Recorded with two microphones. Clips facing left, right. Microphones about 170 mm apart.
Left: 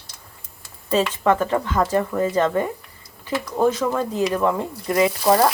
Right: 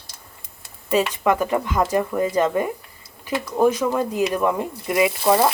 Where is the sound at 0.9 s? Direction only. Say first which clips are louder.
Even; 15° right (ahead or behind).